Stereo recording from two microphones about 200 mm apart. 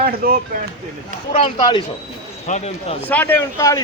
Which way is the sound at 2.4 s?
35° left (ahead or behind).